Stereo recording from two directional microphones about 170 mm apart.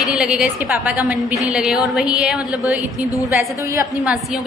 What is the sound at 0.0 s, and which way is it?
A woman's voice, 5° right (ahead or behind).